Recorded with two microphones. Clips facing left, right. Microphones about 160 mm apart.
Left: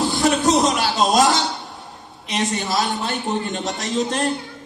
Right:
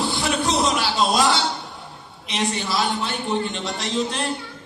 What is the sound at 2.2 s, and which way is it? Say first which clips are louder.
A man's voice: left 2 dB; 45° left (ahead or behind).